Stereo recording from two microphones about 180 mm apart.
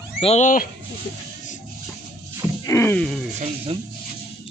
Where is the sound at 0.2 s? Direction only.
35° left (ahead or behind).